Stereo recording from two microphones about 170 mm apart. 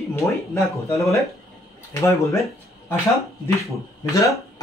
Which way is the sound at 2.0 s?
15° left (ahead or behind).